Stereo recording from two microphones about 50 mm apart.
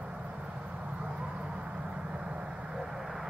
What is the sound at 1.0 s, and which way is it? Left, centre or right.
Vehicle, right.